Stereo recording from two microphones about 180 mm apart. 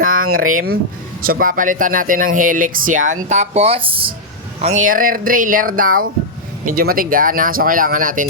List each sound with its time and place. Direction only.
0.0 s speech: 50° right (ahead or behind); by 4.1 s 30° right (ahead or behind)
4.6 s speech: 45° right (ahead or behind)